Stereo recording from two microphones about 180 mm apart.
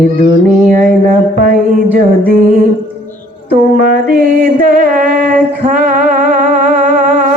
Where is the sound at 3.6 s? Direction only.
55° right (ahead or behind).